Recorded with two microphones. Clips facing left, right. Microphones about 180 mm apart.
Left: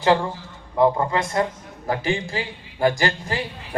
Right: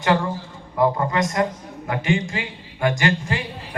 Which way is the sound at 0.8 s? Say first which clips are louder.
Left 1 dB; 25° left (ahead or behind).